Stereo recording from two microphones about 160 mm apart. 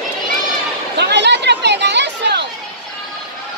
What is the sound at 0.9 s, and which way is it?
Chatter, 90° right.